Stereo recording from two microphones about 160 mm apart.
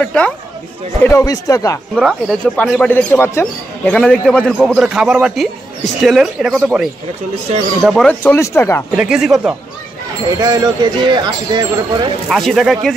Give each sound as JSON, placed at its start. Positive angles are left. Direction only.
{"t": 0.0, "sound": "speech", "side_deg": 10}
{"t": 1.0, "sound": "speech", "side_deg": 20}
{"t": 2.0, "sound": "speech", "side_deg": 0}
{"t": 4.5, "sound": "a man's voice", "side_deg": -5}
{"t": 8.2, "sound": "speech", "side_deg": 15}
{"t": 8.9, "sound": "a man's voice", "side_deg": -5}
{"t": 10.4, "sound": "speech", "side_deg": -25}
{"t": 12.3, "sound": "a man's voice", "side_deg": 0}